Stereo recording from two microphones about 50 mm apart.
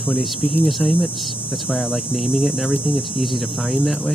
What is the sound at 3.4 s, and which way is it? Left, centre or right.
Hum, centre.